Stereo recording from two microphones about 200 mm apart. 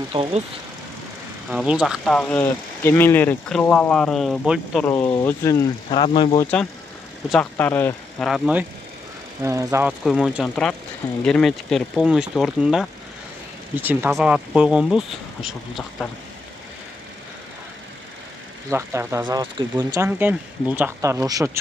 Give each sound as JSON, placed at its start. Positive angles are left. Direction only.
{"t": 0.1, "sound": "speech", "side_deg": -25}
{"t": 1.5, "sound": "speech", "side_deg": -5}
{"t": 4.8, "sound": "speech", "side_deg": 10}
{"t": 7.2, "sound": "speech", "side_deg": 5}
{"t": 9.4, "sound": "speech", "side_deg": -15}
{"t": 10.0, "sound": "speech", "side_deg": 0}
{"t": 18.7, "sound": "speech", "side_deg": -15}